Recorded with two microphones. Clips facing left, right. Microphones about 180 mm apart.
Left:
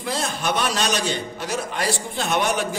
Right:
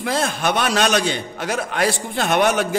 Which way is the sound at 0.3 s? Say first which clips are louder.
Right 3 dB; 70° right (ahead or behind).